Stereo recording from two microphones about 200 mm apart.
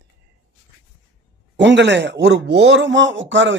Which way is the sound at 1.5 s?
60° right (ahead or behind).